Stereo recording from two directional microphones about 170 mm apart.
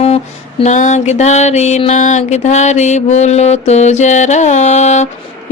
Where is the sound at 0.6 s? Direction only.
45° left (ahead or behind).